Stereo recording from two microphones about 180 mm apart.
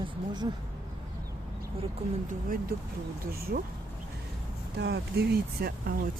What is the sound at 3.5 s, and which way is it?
Speech, 60° right (ahead or behind).